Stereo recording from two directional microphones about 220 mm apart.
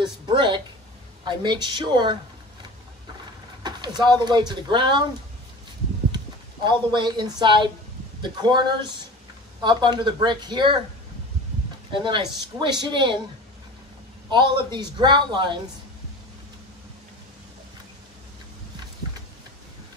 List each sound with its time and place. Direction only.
0.0 s a woman's voice: 20° right (ahead or behind)
3.6 s speech: 20° right (ahead or behind)
6.1 s speech: 20° right (ahead or behind)
11.9 s speech: 20° right (ahead or behind)
14.3 s speech: 20° right (ahead or behind)